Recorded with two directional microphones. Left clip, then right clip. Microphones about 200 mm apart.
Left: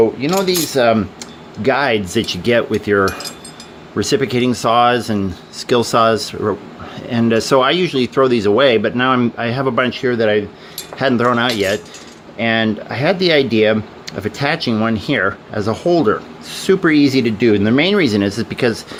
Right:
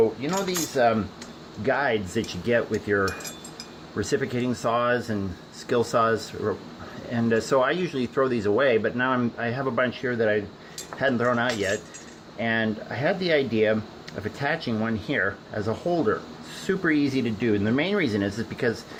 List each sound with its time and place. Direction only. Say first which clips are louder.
0.2 s speech: left 11 dB; 55° left (ahead or behind)